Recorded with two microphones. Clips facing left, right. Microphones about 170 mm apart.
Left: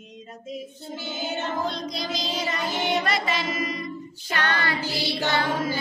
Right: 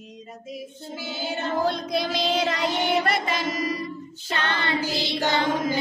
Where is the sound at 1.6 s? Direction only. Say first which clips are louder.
Right 5 dB; 55° right (ahead or behind); by 2.7 s 70° right (ahead or behind).